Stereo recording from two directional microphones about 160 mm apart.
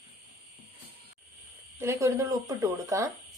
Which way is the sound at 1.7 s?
15° right (ahead or behind).